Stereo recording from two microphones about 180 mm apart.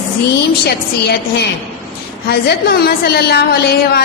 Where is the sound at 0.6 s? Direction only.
60° left (ahead or behind).